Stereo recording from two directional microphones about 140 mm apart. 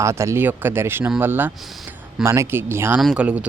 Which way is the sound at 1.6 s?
Centre (ahead or behind).